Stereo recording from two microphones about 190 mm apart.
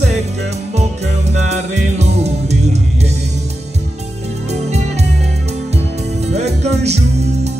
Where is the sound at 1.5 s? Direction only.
35° right (ahead or behind).